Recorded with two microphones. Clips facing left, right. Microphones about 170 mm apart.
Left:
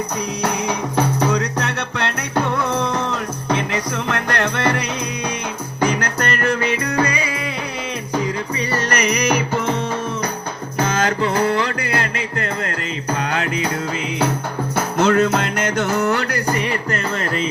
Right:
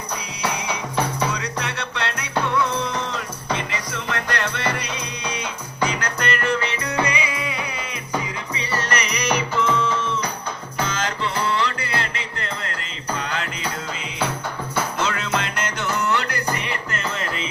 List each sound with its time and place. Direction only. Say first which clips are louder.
0.4 s music: left 3 dB; 45° left (ahead or behind)
3.7 s music: left 6 dB; 50° left (ahead or behind)
5.8 s music: left 4 dB; 45° left (ahead or behind)
8.5 s music: left 2 dB; 40° left (ahead or behind)
14.9 s music: left 13 dB; 45° left (ahead or behind)